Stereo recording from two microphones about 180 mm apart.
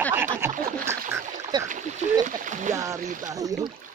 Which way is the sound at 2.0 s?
45° right (ahead or behind).